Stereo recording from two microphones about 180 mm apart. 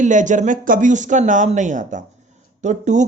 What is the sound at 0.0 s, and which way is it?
Speech, 45° right (ahead or behind).